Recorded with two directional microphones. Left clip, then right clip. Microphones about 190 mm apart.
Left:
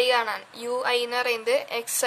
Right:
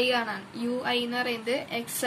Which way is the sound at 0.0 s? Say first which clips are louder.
Left 4 dB; 45° left (ahead or behind).